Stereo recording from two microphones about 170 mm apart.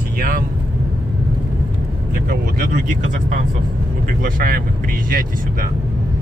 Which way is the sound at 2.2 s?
55° right (ahead or behind).